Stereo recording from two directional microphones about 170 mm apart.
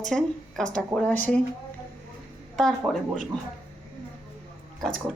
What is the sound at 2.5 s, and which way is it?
Speech, 5° left (ahead or behind).